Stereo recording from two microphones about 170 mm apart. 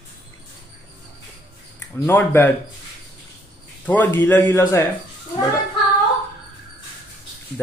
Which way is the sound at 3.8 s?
10° left (ahead or behind).